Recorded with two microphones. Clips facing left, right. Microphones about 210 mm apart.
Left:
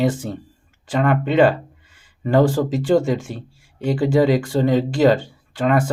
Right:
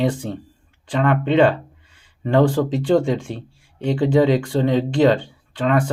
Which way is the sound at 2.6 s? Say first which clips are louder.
Even; 5° left (ahead or behind).